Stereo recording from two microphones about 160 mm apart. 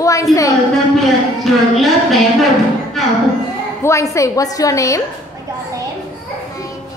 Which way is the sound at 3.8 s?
20° left (ahead or behind).